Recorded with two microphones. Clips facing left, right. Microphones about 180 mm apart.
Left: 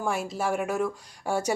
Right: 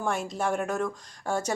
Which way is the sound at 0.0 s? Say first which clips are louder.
Even; 5° left (ahead or behind).